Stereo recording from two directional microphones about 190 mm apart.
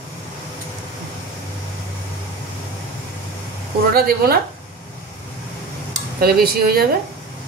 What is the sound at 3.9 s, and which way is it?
Speech, 50° right (ahead or behind).